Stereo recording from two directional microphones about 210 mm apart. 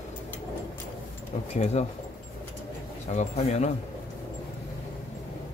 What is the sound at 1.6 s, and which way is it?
Speech, 30° left (ahead or behind).